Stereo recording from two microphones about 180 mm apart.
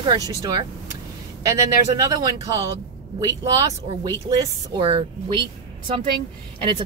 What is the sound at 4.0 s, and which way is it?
Speech, 20° right (ahead or behind).